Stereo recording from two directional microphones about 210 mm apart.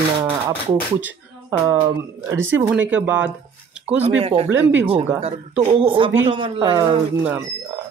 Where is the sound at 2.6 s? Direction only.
5° right (ahead or behind).